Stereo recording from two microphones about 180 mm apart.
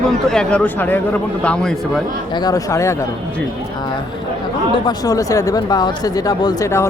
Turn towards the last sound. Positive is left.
turn(degrees=15)  # may be behind; listen again after turning